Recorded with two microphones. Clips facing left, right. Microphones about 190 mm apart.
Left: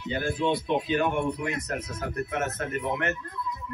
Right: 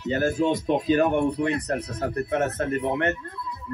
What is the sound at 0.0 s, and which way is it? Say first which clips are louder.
Speech: right 5 dB; 45° right (ahead or behind).